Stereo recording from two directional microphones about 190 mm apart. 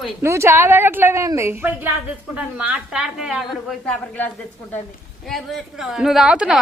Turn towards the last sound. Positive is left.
turn(degrees=-5)  # may be behind; listen again after turning